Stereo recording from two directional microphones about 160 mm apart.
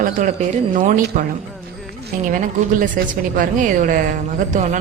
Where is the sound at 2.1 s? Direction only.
55° right (ahead or behind).